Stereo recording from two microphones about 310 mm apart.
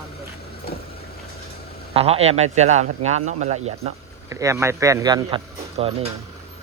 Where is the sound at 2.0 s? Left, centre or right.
Centre.